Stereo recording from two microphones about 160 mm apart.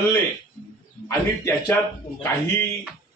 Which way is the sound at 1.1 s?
20° left (ahead or behind).